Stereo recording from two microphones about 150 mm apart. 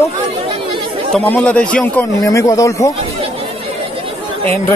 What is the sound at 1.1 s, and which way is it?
Speech, 10° left (ahead or behind).